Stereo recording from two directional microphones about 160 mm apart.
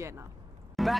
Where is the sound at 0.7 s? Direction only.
Centre (ahead or behind).